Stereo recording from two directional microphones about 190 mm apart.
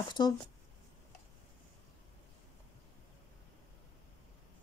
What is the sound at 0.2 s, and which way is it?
Speech, 20° left (ahead or behind).